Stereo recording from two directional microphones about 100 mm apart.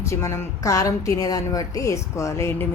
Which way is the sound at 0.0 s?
30° left (ahead or behind).